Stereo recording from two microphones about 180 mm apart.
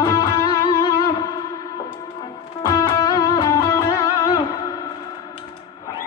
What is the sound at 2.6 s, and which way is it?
Music, 20° left (ahead or behind).